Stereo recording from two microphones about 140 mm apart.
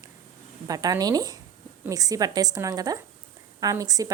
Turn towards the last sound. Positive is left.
turn(degrees=-25)  # may be behind; listen again after turning